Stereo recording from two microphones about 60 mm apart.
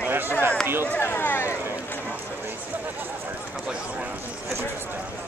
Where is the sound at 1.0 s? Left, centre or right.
Left.